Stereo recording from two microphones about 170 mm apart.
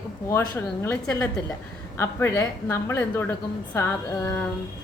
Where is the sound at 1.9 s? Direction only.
15° left (ahead or behind).